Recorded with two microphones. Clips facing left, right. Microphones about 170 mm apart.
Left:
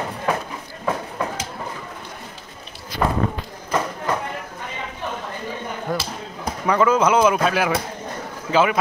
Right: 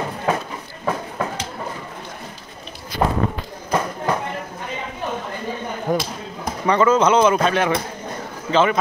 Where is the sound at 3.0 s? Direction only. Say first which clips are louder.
Right 1 dB; 20° right (ahead or behind).